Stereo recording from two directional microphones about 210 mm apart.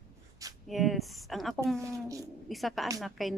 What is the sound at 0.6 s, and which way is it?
Speech, centre (ahead or behind).